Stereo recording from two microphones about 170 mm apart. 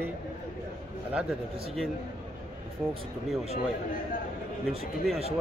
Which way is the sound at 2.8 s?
5° right (ahead or behind).